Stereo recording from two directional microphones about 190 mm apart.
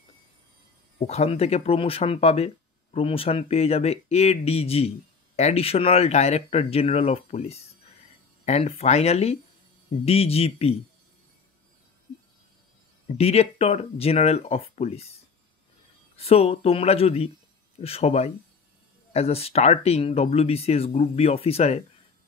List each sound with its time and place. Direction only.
0.9 s speech: 35° left (ahead or behind)
13.1 s speech: 35° left (ahead or behind)
16.2 s speech: 30° left (ahead or behind)